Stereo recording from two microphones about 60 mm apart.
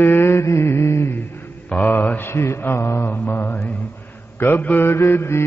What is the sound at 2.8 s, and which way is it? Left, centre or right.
Mantra, left.